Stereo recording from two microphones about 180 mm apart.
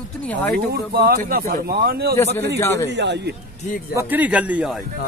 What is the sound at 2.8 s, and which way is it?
Speech, 75° right (ahead or behind).